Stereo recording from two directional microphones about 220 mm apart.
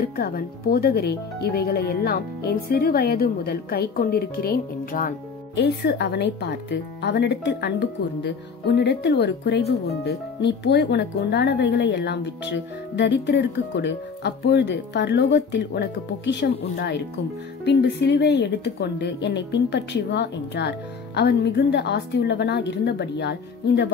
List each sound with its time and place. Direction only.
0.1 s speech: 45° left (ahead or behind)